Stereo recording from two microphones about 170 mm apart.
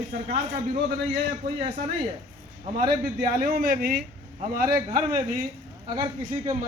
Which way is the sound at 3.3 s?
60° right (ahead or behind).